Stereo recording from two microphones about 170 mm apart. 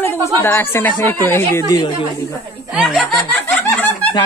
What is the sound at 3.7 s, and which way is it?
Snicker, 10° left (ahead or behind).